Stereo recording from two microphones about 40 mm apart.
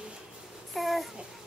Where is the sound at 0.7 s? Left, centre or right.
Centre.